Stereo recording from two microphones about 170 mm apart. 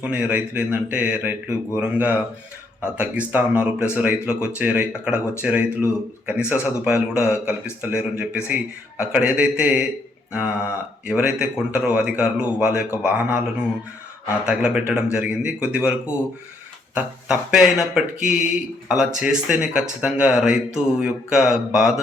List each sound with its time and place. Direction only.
0.0 s speech: 10° right (ahead or behind)
3.2 s speech: 10° right (ahead or behind)